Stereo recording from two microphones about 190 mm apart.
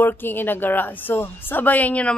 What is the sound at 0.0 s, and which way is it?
A woman's voice, 10° left (ahead or behind).